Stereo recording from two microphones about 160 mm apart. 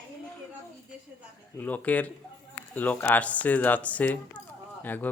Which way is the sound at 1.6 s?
10° left (ahead or behind).